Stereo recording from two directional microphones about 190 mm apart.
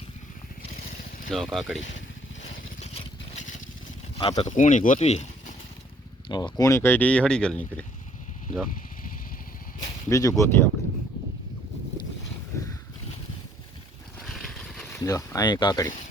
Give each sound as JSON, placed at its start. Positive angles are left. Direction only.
{"t": 1.3, "sound": "speech", "side_deg": 0}
{"t": 2.8, "sound": "vehicle", "side_deg": 35}
{"t": 4.1, "sound": "speech", "side_deg": 30}
{"t": 6.2, "sound": "speech", "side_deg": 25}
{"t": 9.8, "sound": "speech", "side_deg": 15}
{"t": 14.3, "sound": "a sound", "side_deg": 0}
{"t": 15.0, "sound": "speech", "side_deg": 15}